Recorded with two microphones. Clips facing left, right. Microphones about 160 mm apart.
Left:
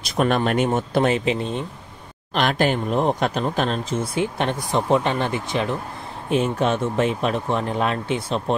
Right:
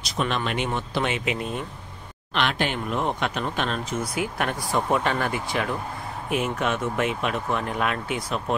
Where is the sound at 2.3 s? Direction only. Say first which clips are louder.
Left 5 dB; 40° left (ahead or behind).